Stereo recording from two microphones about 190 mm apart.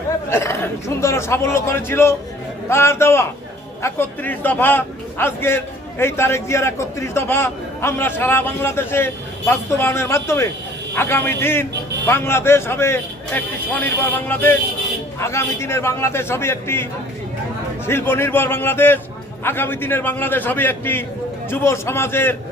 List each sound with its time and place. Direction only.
0.3 s a man's voice: 15° left (ahead or behind)
17.8 s a man's voice: 10° left (ahead or behind)